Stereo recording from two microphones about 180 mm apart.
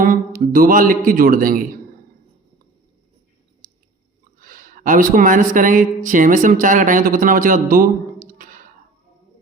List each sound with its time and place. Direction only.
0.0 s a man's voice: 50° right (ahead or behind)
4.4 s speech: 50° right (ahead or behind)
8.3 s beatboxing: 50° right (ahead or behind)